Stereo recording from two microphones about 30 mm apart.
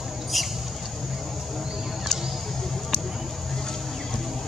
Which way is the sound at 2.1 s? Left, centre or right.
Left.